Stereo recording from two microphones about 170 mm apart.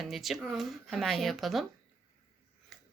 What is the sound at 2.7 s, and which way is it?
Mechanisms, centre (ahead or behind).